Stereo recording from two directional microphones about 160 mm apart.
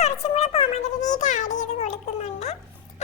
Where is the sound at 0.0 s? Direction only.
45° left (ahead or behind).